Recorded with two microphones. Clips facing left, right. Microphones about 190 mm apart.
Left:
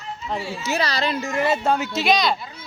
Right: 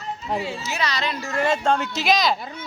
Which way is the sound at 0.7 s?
35° left (ahead or behind).